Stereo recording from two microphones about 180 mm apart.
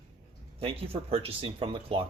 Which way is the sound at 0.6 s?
30° right (ahead or behind).